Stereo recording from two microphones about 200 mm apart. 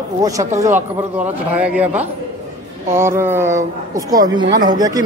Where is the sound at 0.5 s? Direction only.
35° right (ahead or behind).